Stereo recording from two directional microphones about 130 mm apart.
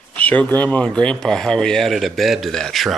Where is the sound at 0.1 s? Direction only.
10° left (ahead or behind).